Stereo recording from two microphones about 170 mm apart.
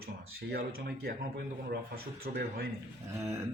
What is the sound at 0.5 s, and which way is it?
Speech, 65° right (ahead or behind).